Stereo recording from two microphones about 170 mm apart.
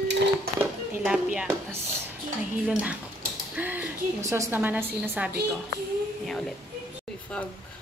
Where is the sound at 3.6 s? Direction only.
10° right (ahead or behind).